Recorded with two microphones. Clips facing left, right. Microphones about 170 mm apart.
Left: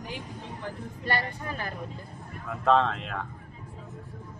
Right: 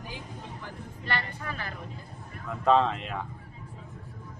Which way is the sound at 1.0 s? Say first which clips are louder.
Left 3 dB; 45° left (ahead or behind).